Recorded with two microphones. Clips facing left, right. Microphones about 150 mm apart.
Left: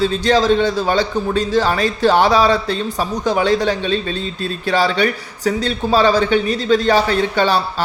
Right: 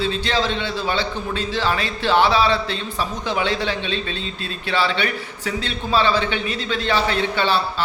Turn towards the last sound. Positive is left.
turn(degrees=45)  # may be behind; listen again after turning